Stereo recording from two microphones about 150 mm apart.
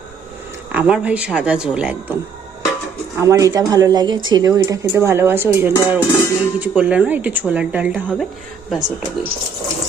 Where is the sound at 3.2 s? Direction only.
20° right (ahead or behind).